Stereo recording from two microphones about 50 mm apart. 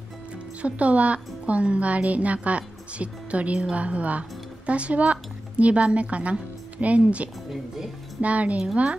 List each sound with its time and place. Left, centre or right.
0.6 s a woman's voice: right